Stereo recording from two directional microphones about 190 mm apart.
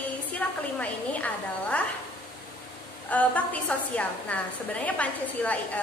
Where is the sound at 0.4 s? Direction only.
10° left (ahead or behind).